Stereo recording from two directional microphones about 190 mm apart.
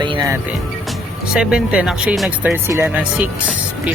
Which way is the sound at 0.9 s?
5° right (ahead or behind).